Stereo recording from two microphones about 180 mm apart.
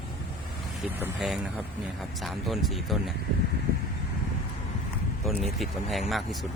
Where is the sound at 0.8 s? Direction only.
5° right (ahead or behind).